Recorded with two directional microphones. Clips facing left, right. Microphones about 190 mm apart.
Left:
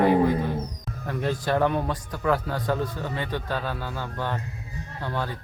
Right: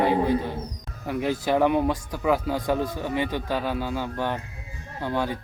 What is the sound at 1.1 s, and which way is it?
A man's voice, 10° right (ahead or behind).